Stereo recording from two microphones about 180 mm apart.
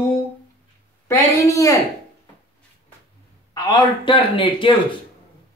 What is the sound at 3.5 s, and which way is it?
Speech, 25° left (ahead or behind).